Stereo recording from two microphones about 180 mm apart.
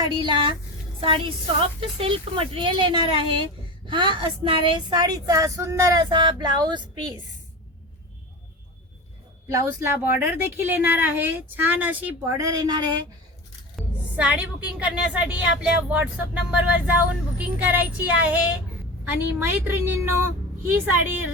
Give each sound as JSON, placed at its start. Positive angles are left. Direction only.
{"t": 0.0, "sound": "speech", "side_deg": -25}
{"t": 9.5, "sound": "a woman's voice", "side_deg": -15}
{"t": 13.7, "sound": "a woman's voice", "side_deg": -5}
{"t": 19.4, "sound": "a woman's voice", "side_deg": -10}